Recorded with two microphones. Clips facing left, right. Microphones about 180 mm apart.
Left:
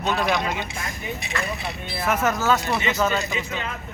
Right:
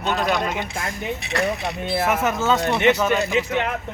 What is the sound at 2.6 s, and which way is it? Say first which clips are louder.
Speech: right 7 dB; 65° right (ahead or behind).